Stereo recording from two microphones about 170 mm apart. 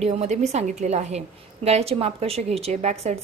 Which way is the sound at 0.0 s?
40° right (ahead or behind).